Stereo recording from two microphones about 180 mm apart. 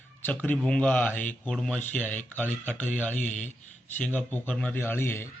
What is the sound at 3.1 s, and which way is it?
Speech, 40° left (ahead or behind).